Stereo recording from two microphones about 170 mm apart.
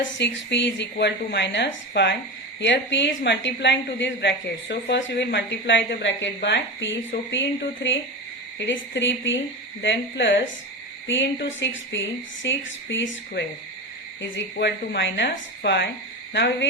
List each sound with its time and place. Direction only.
0.2 s a woman's voice: 90° left